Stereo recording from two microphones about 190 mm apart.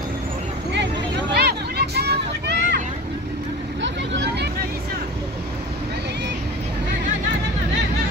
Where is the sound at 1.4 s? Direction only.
60° right (ahead or behind).